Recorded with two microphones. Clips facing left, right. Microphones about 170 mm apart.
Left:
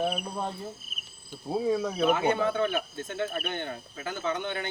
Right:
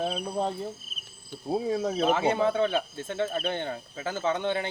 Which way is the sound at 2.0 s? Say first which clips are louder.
Right 2 dB; 30° right (ahead or behind).